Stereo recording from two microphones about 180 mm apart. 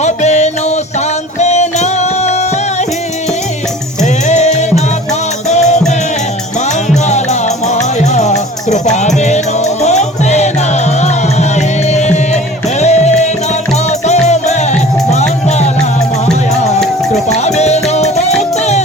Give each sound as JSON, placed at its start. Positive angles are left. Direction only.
{"t": 0.0, "sound": "music", "side_deg": 40}
{"t": 4.0, "sound": "music", "side_deg": 40}
{"t": 7.1, "sound": "music", "side_deg": 40}
{"t": 11.9, "sound": "music", "side_deg": 40}